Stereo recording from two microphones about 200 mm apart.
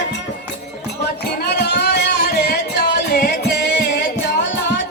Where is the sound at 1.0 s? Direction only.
55° left (ahead or behind).